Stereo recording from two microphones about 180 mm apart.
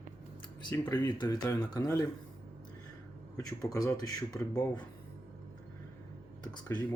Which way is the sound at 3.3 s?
20° left (ahead or behind).